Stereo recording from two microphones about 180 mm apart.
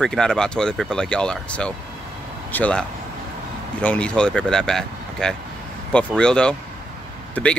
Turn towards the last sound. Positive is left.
turn(degrees=5)  # may be behind; listen again after turning